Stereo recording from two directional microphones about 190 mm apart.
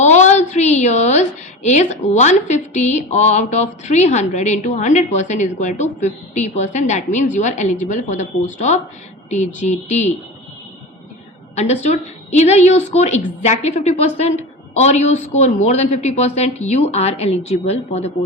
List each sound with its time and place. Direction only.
0.0 s a woman's voice: 40° left (ahead or behind)
11.5 s a woman's voice: 35° left (ahead or behind)